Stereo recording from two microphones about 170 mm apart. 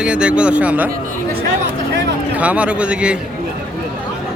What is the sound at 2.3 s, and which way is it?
Speech, 10° right (ahead or behind).